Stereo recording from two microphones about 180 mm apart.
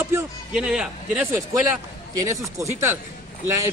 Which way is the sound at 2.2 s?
15° right (ahead or behind).